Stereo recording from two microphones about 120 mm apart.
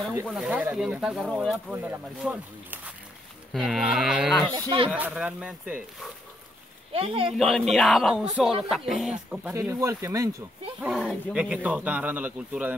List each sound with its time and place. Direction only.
0.3 s a man's voice: 5° right (ahead or behind)
0.7 s livestock: 5° right (ahead or behind)
1.7 s a man's voice: 15° right (ahead or behind)
3.5 s livestock: 5° right (ahead or behind)
4.9 s a man's voice: 10° right (ahead or behind)
6.9 s speech: 50° right (ahead or behind)
7.3 s livestock: centre (ahead or behind)
9.5 s speech: 25° right (ahead or behind)
10.8 s livestock: centre (ahead or behind)
11.3 s a man's voice: 10° right (ahead or behind)